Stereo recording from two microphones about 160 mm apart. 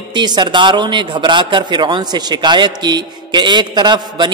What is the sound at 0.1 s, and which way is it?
A man's voice, 30° right (ahead or behind).